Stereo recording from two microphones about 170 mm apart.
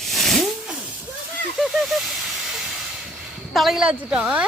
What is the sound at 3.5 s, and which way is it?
Speech, centre (ahead or behind).